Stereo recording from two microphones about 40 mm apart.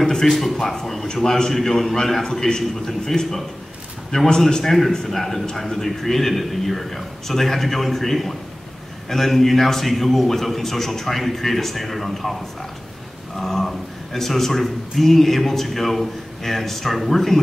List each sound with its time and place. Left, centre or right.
0.0 s a man's voice: centre
4.1 s a man's voice: left
5.0 s a man's voice: centre
13.4 s a man's voice: centre